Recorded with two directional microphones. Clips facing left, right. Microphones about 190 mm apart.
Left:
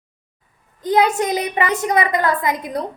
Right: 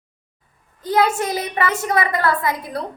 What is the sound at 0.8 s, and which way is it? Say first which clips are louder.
A woman's voice: left 2 dB; 20° left (ahead or behind).